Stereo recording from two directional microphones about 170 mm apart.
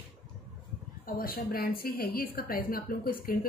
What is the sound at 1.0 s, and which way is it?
A woman's voice, 60° left (ahead or behind).